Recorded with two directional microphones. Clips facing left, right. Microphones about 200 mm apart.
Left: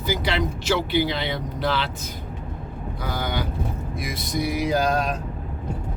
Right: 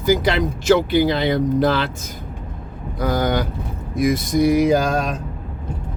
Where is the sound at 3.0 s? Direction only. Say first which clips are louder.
Right 9 dB; 45° right (ahead or behind).